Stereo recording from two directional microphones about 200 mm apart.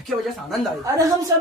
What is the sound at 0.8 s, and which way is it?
Speech, 15° right (ahead or behind).